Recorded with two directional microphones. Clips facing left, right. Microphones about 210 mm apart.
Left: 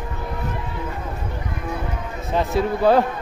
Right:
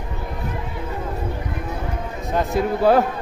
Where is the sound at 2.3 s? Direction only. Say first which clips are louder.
Even; centre (ahead or behind).